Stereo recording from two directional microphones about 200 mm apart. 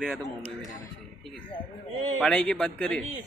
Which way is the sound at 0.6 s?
15° left (ahead or behind).